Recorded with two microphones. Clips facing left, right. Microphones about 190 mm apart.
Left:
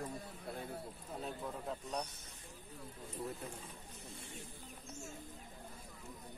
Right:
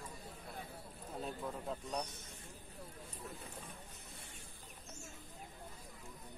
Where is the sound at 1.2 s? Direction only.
Centre (ahead or behind).